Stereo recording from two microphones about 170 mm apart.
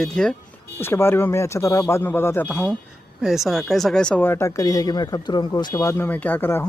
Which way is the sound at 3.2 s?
Centre (ahead or behind).